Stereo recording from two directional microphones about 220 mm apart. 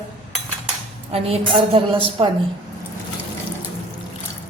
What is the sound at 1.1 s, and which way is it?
Speech, 25° right (ahead or behind).